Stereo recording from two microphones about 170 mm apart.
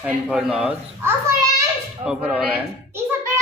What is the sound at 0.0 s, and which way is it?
A child's voice, 5° right (ahead or behind).